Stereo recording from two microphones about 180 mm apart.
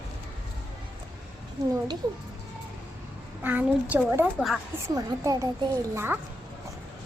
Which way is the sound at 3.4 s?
10° right (ahead or behind).